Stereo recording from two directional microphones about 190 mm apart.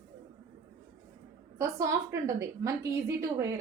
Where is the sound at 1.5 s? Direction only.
15° right (ahead or behind).